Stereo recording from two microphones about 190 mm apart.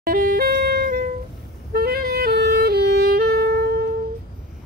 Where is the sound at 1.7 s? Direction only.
55° right (ahead or behind).